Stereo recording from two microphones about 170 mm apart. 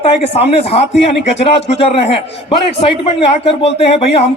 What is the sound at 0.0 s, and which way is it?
A man's voice, 40° left (ahead or behind).